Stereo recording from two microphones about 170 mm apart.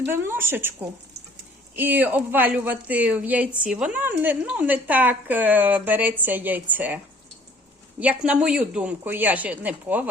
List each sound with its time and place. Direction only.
0.0 s speech: 15° right (ahead or behind)